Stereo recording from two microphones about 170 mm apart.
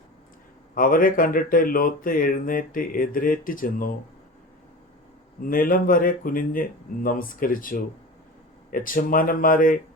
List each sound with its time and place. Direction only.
0.8 s speech: 55° left (ahead or behind)
5.4 s speech: 55° left (ahead or behind)